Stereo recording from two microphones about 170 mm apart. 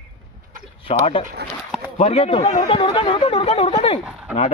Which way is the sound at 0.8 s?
35° left (ahead or behind).